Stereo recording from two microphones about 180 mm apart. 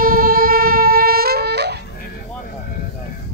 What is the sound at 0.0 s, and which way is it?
Music, 55° right (ahead or behind).